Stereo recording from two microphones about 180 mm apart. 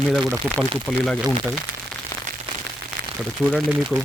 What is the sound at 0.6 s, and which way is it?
Speech, 5° right (ahead or behind).